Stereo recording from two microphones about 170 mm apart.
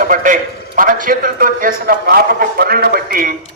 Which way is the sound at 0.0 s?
50° right (ahead or behind).